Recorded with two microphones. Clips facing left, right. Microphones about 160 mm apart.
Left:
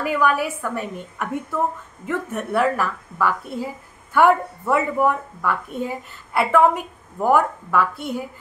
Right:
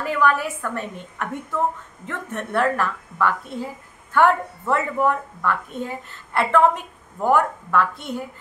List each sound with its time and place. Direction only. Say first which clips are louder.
0.0 s a woman's voice: left 1 dB; 10° left (ahead or behind)